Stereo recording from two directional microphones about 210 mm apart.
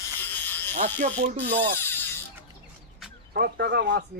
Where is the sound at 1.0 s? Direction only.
35° right (ahead or behind).